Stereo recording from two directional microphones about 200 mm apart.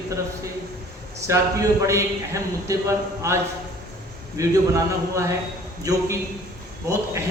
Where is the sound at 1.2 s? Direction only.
15° right (ahead or behind).